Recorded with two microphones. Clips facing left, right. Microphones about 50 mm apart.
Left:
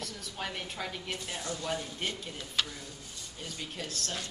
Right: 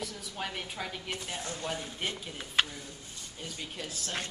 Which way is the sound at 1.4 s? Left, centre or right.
Right.